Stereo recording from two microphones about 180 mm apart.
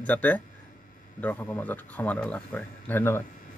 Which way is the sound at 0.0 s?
10° left (ahead or behind).